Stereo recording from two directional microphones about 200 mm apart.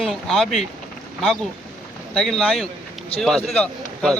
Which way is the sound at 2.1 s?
5° left (ahead or behind).